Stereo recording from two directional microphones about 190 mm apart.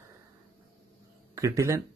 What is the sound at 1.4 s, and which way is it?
Speech, 15° right (ahead or behind).